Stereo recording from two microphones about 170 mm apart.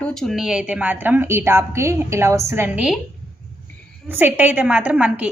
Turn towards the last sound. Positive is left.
turn(degrees=-10)  # may be behind; listen again after turning